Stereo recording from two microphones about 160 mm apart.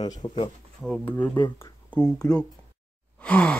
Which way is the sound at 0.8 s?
Centre (ahead or behind).